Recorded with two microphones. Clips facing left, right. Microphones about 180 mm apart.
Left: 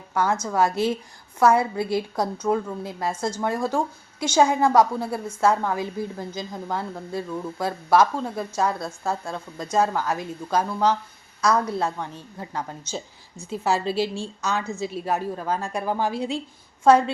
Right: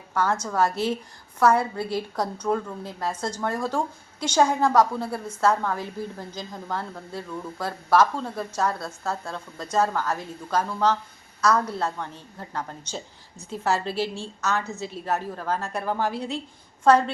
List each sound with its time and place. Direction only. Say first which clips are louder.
0.1 s a woman's voice: left 2 dB; 10° left (ahead or behind)